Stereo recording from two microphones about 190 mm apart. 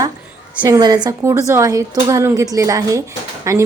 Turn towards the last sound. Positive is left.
turn(degrees=-15)  # may be behind; listen again after turning